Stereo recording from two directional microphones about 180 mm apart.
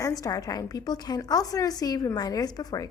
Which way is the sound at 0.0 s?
20° left (ahead or behind).